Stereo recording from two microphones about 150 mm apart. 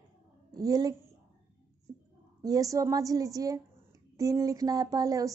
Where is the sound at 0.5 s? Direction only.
25° right (ahead or behind).